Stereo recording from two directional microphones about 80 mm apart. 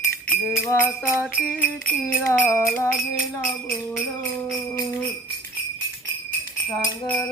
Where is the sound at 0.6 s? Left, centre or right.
Left.